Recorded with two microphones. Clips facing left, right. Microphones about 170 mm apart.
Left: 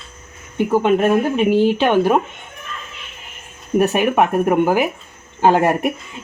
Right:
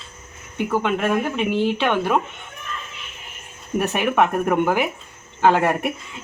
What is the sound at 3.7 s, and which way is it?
A woman's voice, 20° left (ahead or behind).